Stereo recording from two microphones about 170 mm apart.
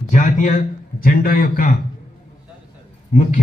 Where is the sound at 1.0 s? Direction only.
60° left (ahead or behind).